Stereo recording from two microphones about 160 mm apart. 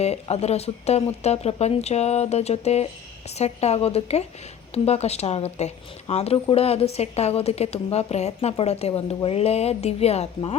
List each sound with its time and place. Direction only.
0.0 s a woman's voice: 40° left (ahead or behind)